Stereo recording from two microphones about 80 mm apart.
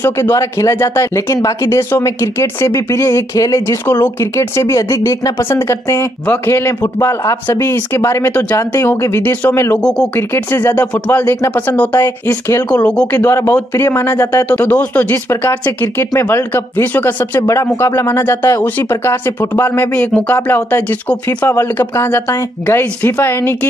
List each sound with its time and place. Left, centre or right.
0.0 s a man's voice: left
3.8 s speech: left
4.4 s a man's voice: left
9.8 s speech: centre
10.3 s speech: left
12.0 s a man's voice: left
12.7 s speech: centre
13.1 s speech: left
17.4 s a man's voice: left
20.0 s speech: centre
21.5 s speech: left